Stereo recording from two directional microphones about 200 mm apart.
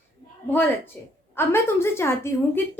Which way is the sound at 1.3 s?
10° left (ahead or behind).